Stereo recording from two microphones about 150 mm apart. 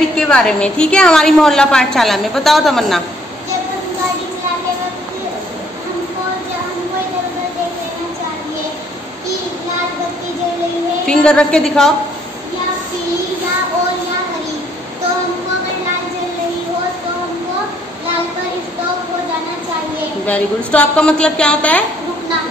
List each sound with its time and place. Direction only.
0.2 s a woman's voice: 5° left (ahead or behind)
11.1 s a woman's voice: 5° left (ahead or behind)
20.2 s a woman's voice: 10° left (ahead or behind)